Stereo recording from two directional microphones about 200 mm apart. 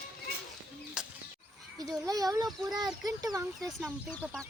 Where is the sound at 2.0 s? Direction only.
20° right (ahead or behind).